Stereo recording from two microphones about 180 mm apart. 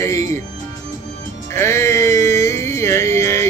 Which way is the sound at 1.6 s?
15° left (ahead or behind).